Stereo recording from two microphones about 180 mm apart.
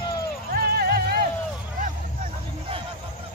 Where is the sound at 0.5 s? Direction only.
60° right (ahead or behind).